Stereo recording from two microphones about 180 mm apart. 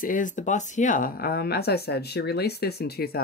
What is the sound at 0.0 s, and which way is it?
Speech, 45° left (ahead or behind).